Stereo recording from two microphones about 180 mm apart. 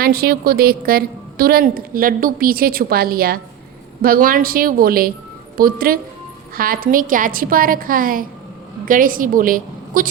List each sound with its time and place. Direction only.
0.0 s a woman's voice: 60° right (ahead or behind)